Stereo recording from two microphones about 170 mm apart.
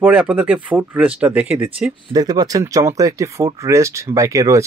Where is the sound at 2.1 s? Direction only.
25° right (ahead or behind).